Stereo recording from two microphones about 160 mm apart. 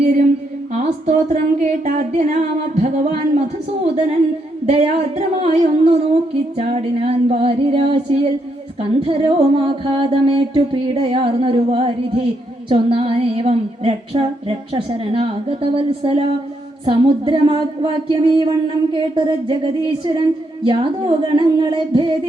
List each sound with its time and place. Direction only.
0.7 s speech: 45° right (ahead or behind)
4.6 s female singing: 40° right (ahead or behind)